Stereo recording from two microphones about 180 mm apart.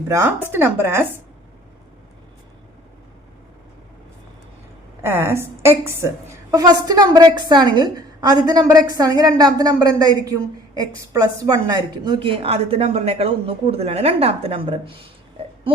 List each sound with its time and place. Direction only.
0.1 s a woman's voice: 15° right (ahead or behind)
5.0 s a woman's voice: 15° right (ahead or behind); by 14.9 s 30° right (ahead or behind)